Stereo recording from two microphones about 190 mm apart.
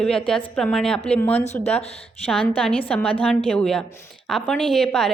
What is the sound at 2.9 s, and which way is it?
Speech, 5° left (ahead or behind).